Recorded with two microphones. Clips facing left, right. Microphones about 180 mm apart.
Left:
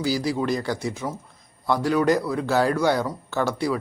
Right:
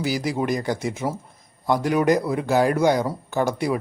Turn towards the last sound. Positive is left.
turn(degrees=-20)  # may be behind; listen again after turning